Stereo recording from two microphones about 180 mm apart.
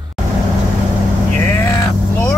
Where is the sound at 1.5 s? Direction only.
15° left (ahead or behind).